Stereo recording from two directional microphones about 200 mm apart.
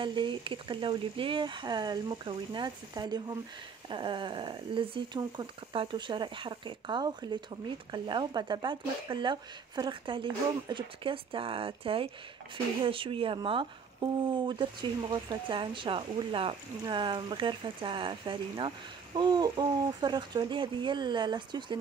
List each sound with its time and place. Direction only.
0.0 s speech: 25° right (ahead or behind)